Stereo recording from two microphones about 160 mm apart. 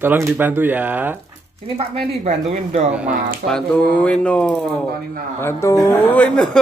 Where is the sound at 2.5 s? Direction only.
40° right (ahead or behind).